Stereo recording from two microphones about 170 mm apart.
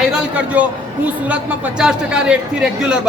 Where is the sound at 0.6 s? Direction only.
10° right (ahead or behind).